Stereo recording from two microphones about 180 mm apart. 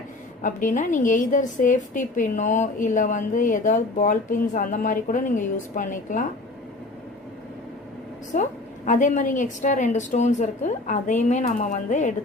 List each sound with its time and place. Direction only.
0.4 s a woman's voice: 45° left (ahead or behind)
8.3 s a woman's voice: 40° left (ahead or behind)